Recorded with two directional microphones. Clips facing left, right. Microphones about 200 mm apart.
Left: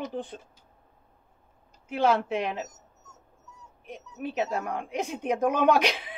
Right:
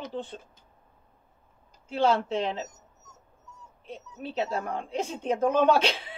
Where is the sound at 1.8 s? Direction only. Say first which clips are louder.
Even; 15° left (ahead or behind).